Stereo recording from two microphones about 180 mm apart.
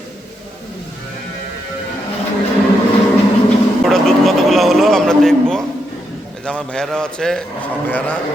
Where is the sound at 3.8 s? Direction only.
Centre (ahead or behind).